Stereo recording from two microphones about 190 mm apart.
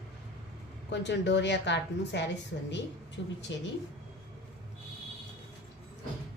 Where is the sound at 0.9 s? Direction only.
65° left (ahead or behind).